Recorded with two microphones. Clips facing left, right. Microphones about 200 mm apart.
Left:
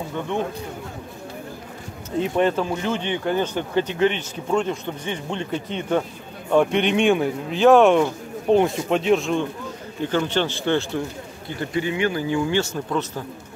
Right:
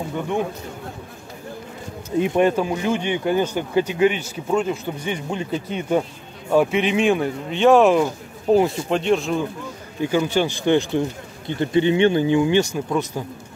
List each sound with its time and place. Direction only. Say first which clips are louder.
2.1 s speech: right 3 dB; 15° right (ahead or behind)